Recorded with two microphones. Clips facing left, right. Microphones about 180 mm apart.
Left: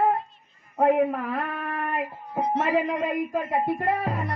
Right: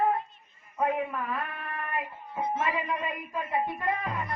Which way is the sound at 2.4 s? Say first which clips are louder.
Left 7 dB; 75° left (ahead or behind).